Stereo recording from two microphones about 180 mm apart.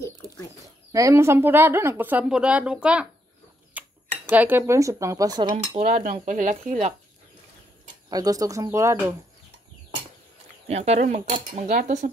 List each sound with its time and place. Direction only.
0.9 s a woman's voice: 15° right (ahead or behind)
3.8 s cutlery: 10° right (ahead or behind)
4.3 s a woman's voice: 10° right (ahead or behind)
5.8 s cutlery: 45° right (ahead or behind)
8.1 s speech: 20° right (ahead or behind)
10.7 s speech: 35° right (ahead or behind)